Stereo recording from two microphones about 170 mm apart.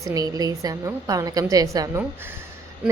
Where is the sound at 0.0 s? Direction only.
20° right (ahead or behind).